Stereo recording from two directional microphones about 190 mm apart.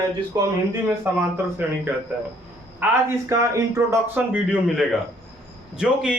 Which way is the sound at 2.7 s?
10° right (ahead or behind).